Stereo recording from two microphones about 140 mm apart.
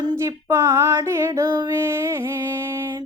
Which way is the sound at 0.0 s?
25° right (ahead or behind).